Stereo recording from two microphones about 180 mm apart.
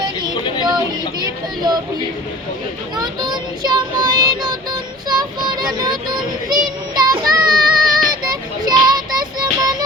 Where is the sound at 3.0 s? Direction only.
25° right (ahead or behind).